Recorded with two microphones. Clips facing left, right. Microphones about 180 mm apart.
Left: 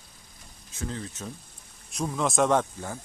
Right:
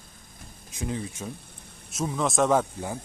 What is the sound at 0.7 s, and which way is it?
A man's voice, 15° right (ahead or behind).